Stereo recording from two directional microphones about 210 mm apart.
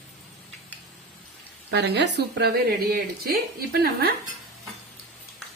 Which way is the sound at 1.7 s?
55° right (ahead or behind).